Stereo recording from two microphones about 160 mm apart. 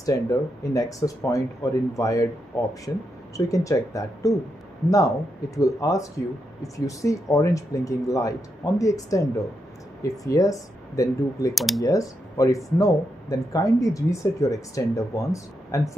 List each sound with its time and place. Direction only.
0.0 s speech: 20° left (ahead or behind)
3.3 s speech: 20° left (ahead or behind)
11.5 s speech: centre (ahead or behind)
11.8 s speech: 20° left (ahead or behind)